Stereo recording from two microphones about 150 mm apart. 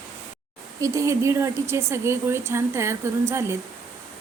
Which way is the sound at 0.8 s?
20° right (ahead or behind).